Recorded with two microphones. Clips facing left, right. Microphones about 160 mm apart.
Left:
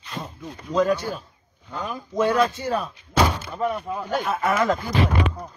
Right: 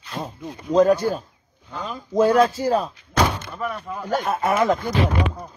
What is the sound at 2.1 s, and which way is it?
Speech, 30° right (ahead or behind).